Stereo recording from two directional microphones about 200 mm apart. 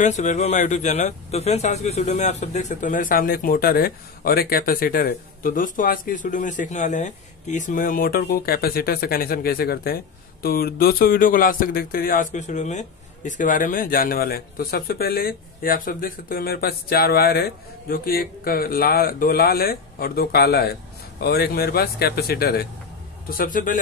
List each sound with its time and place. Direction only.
0.0 s speech: 35° left (ahead or behind)